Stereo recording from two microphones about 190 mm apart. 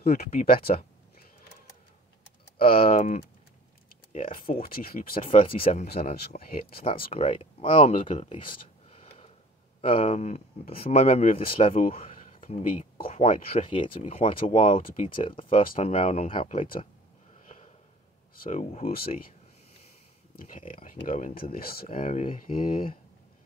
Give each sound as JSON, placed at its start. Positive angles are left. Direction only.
{"t": 0.0, "sound": "speech", "side_deg": 50}
{"t": 2.6, "sound": "speech", "side_deg": 50}
{"t": 5.1, "sound": "speech", "side_deg": 30}
{"t": 6.1, "sound": "speech", "side_deg": 55}
{"t": 7.1, "sound": "speech", "side_deg": 30}
{"t": 7.9, "sound": "a sound", "side_deg": 35}
{"t": 9.8, "sound": "speech", "side_deg": 30}
{"t": 11.9, "sound": "a sound", "side_deg": 30}
{"t": 12.4, "sound": "speech", "side_deg": 40}
{"t": 13.0, "sound": "speech", "side_deg": 30}
{"t": 18.3, "sound": "speech", "side_deg": 45}
{"t": 20.3, "sound": "speech", "side_deg": 45}
{"t": 21.8, "sound": "speech", "side_deg": 35}